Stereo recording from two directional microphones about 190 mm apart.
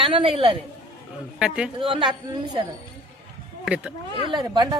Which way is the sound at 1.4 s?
5° right (ahead or behind).